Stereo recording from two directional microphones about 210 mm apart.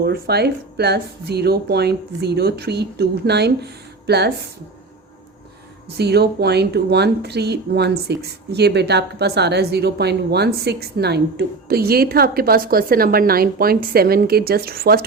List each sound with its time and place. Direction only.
0.0 s speech: 50° right (ahead or behind)
6.0 s speech: 50° right (ahead or behind)